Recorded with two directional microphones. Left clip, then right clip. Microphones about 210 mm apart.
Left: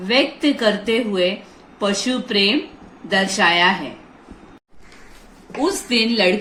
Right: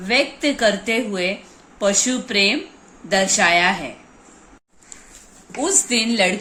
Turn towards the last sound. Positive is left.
turn(degrees=-55)  # may be behind; listen again after turning